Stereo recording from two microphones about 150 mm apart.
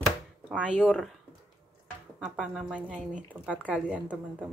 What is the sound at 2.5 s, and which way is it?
Speech, 5° right (ahead or behind).